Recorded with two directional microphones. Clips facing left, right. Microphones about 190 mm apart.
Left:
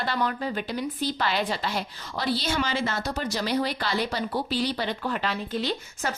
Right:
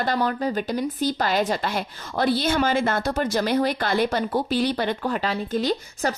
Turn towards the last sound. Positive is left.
turn(degrees=-40)  # may be behind; listen again after turning